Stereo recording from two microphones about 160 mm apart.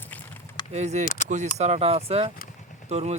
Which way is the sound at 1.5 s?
45° right (ahead or behind).